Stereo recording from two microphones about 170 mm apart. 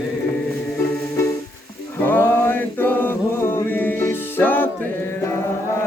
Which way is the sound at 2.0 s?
10° left (ahead or behind).